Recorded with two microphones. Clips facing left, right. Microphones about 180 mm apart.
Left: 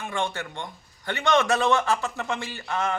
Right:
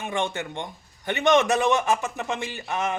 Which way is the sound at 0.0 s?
20° right (ahead or behind).